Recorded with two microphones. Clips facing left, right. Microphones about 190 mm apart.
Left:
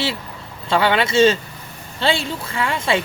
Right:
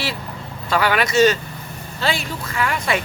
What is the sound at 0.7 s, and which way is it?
Speech, 25° left (ahead or behind).